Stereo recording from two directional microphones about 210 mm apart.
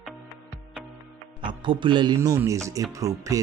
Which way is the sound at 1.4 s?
25° right (ahead or behind).